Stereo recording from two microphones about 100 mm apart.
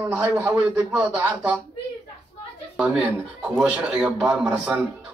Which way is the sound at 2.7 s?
5° right (ahead or behind).